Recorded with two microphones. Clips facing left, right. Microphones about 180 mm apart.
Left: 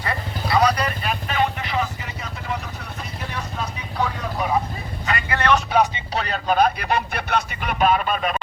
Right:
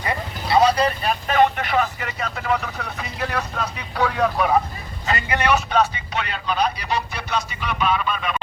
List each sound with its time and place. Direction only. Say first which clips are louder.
0.0 s vehicle: right 1 dB; 25° right (ahead or behind); by 3.4 s 85° right
3.9 s speech: right 5 dB; 75° right (ahead or behind)
5.0 s vehicle: right 2 dB; 25° right (ahead or behind)
5.4 s speech: left 1 dB; 10° right (ahead or behind)
5.7 s speech: left 1 dB; 15° left (ahead or behind)
6.1 s speech: left 4 dB; 40° left (ahead or behind)